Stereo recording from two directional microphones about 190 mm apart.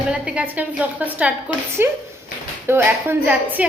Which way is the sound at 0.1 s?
5° right (ahead or behind).